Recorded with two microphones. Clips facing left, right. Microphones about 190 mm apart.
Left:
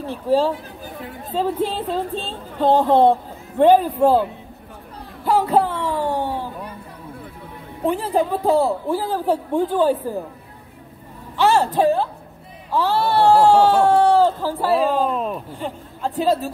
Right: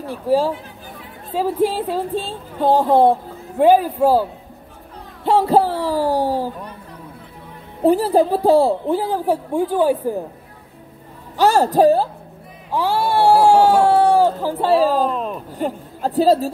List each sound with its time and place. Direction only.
0.0 s speech: 10° right (ahead or behind)
5.2 s a sound: 30° right (ahead or behind)
7.8 s a woman's voice: 35° right (ahead or behind); by 10.1 s 10° right (ahead or behind)
11.3 s a woman's voice: 40° right (ahead or behind)
12.7 s speech: 10° right (ahead or behind)
15.0 s speech: centre (ahead or behind)
15.5 s a woman's voice: 40° right (ahead or behind)